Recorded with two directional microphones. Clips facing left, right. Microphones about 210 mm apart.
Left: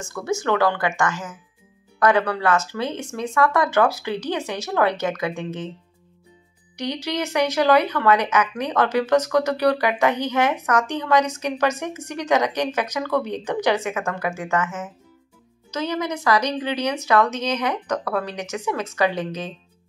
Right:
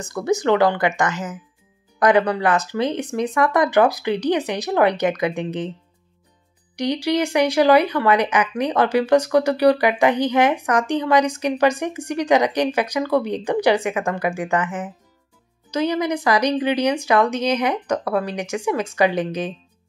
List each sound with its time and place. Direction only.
0.0 s speech: 20° right (ahead or behind)
6.8 s speech: 10° right (ahead or behind)